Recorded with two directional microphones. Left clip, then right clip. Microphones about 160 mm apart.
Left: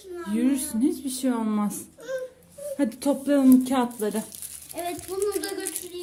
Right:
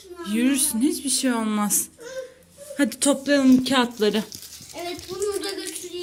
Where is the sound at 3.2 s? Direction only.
10° left (ahead or behind).